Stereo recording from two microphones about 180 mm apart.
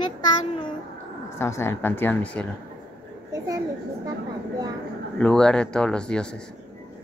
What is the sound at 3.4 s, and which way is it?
Speech, 20° right (ahead or behind).